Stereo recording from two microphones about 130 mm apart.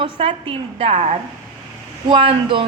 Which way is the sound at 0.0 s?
45° right (ahead or behind).